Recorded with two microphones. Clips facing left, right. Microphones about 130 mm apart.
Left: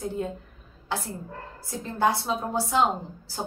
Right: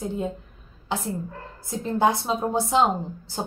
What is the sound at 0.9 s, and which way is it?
A woman's voice, 20° right (ahead or behind).